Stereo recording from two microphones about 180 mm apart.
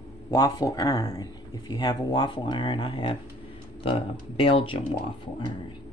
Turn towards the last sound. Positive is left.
turn(degrees=30)  # may be behind; listen again after turning